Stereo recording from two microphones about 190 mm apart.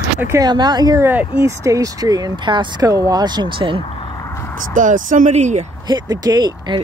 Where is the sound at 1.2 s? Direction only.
25° left (ahead or behind).